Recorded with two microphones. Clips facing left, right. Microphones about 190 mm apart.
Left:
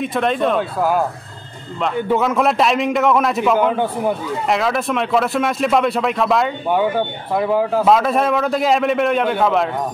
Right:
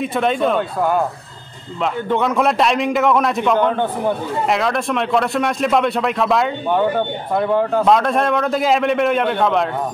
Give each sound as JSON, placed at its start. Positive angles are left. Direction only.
{"t": 0.0, "sound": "speech", "side_deg": 0}
{"t": 2.0, "sound": "speech", "side_deg": 0}